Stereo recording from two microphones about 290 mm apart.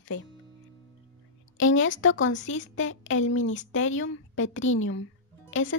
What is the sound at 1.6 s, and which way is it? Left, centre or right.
Speech, left.